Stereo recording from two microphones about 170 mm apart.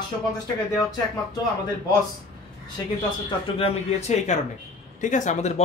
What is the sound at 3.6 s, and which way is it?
Speech, 40° left (ahead or behind).